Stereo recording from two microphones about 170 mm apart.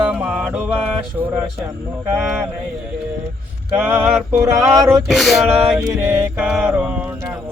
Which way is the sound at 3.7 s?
10° right (ahead or behind).